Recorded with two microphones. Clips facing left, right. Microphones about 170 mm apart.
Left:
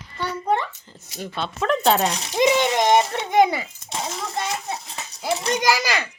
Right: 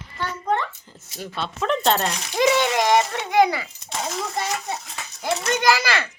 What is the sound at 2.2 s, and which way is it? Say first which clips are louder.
A child's voice: right 1 dB; 20° left (ahead or behind).